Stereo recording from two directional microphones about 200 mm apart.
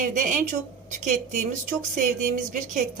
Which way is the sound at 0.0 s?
45° right (ahead or behind).